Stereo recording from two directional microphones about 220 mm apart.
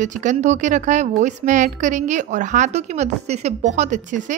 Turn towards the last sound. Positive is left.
turn(degrees=-35)  # may be behind; listen again after turning